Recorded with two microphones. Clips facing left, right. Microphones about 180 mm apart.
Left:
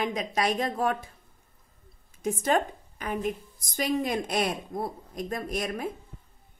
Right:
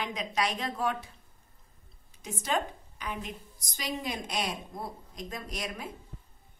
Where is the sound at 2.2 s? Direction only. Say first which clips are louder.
Left 6 dB; 50° left (ahead or behind).